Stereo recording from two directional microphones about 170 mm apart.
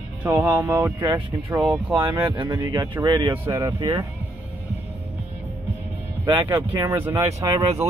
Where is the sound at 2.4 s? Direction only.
25° right (ahead or behind).